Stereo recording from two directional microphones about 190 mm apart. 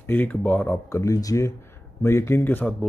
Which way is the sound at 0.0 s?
10° left (ahead or behind).